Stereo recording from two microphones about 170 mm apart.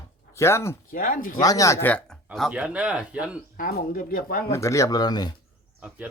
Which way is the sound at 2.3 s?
5° right (ahead or behind).